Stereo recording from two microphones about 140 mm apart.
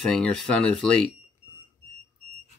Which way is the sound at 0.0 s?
5° left (ahead or behind).